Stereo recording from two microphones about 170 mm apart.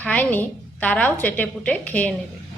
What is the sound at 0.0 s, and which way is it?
A woman's voice, 10° left (ahead or behind).